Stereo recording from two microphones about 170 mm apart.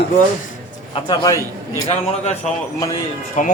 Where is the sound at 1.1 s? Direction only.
20° left (ahead or behind).